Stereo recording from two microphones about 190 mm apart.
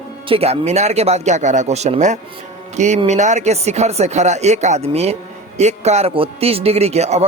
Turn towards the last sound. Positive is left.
turn(degrees=-35)  # may be behind; listen again after turning